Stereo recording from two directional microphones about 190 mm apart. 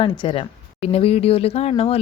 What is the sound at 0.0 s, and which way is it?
Speech, 30° left (ahead or behind).